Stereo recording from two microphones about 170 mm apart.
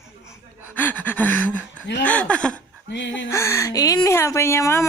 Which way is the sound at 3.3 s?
15° left (ahead or behind).